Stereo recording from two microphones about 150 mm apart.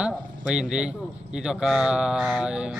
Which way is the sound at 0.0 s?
5° right (ahead or behind).